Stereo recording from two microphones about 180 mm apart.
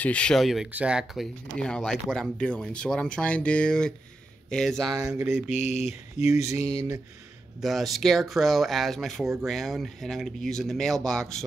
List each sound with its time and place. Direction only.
0.0 s speech: 5° left (ahead or behind)
4.8 s speech: 20° right (ahead or behind)
5.5 s a sound: 40° left (ahead or behind)
7.6 s speech: centre (ahead or behind)
9.2 s speech: 15° right (ahead or behind)
9.5 s speech: centre (ahead or behind)